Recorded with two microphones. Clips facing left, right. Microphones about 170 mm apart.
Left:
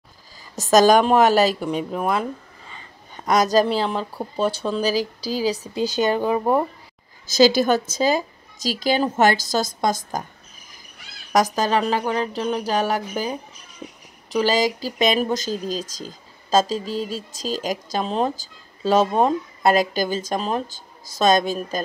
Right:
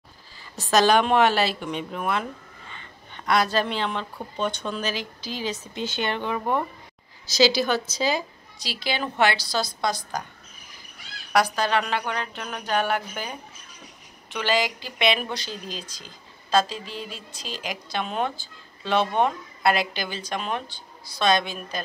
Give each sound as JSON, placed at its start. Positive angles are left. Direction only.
{"t": 0.6, "sound": "speech", "side_deg": 45}
{"t": 7.2, "sound": "a woman's voice", "side_deg": 50}
{"t": 11.3, "sound": "speech", "side_deg": 40}